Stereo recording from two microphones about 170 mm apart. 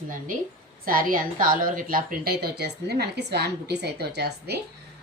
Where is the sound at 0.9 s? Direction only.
55° right (ahead or behind).